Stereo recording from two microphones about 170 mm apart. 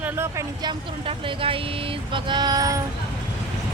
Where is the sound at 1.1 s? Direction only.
30° right (ahead or behind).